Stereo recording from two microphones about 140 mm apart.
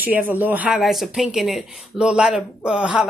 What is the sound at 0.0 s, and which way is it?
A woman's voice, 10° right (ahead or behind).